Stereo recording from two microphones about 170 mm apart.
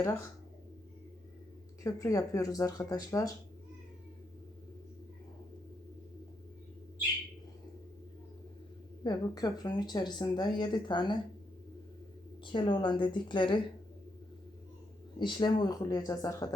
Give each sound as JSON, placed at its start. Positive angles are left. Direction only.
{"t": 0.0, "sound": "speech", "side_deg": 15}
{"t": 1.8, "sound": "speech", "side_deg": 20}
{"t": 9.0, "sound": "speech", "side_deg": 25}
{"t": 12.5, "sound": "speech", "side_deg": 25}
{"t": 15.2, "sound": "speech", "side_deg": 25}